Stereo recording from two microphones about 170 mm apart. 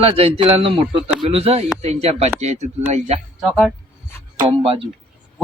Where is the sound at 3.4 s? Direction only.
Centre (ahead or behind).